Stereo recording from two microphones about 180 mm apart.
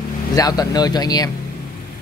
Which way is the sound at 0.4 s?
20° left (ahead or behind).